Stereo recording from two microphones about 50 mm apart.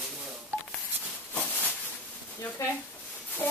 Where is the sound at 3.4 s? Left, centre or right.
Left.